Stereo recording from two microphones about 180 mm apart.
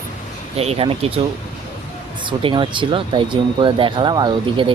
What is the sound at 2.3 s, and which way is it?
Speech, 25° right (ahead or behind).